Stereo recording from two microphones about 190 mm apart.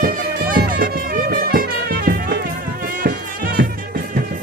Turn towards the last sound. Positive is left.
turn(degrees=-50)  # may be behind; listen again after turning